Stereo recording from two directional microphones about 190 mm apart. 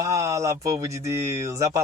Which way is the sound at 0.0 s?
15° right (ahead or behind).